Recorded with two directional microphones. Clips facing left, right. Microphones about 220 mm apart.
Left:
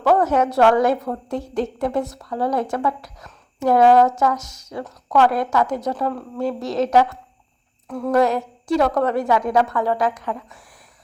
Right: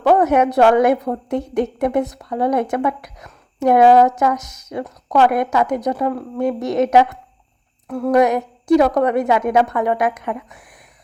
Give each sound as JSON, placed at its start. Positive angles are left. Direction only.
{"t": 0.0, "sound": "a woman's voice", "side_deg": -20}
{"t": 7.9, "sound": "a sound", "side_deg": -10}
{"t": 8.7, "sound": "a woman's voice", "side_deg": -15}